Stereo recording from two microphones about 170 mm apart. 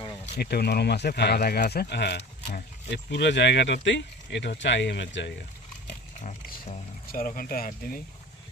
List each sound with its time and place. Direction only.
0.3 s speech: 70° left (ahead or behind); by 5.3 s 90° left
6.2 s speech: 40° left (ahead or behind)
7.1 s speech: 55° left (ahead or behind)